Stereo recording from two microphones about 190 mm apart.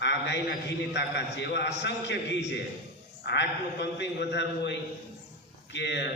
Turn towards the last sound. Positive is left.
turn(degrees=65)  # may be behind; listen again after turning